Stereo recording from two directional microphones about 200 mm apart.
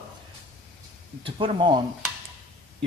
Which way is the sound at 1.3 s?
25° right (ahead or behind).